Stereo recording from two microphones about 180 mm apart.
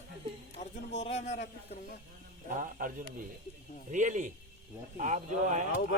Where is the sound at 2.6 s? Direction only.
50° right (ahead or behind).